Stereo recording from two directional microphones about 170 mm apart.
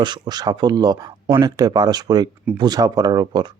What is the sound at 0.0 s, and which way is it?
Speech, 25° right (ahead or behind).